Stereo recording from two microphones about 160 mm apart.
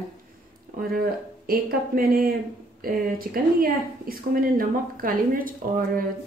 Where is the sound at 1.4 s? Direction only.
65° right (ahead or behind).